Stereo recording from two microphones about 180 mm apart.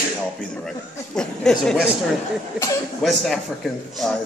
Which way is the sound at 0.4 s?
5° left (ahead or behind).